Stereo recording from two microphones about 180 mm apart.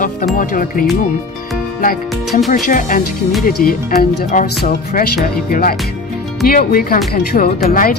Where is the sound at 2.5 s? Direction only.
45° left (ahead or behind).